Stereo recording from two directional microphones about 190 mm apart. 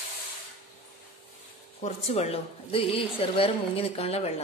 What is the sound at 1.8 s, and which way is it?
A woman's voice, 35° left (ahead or behind).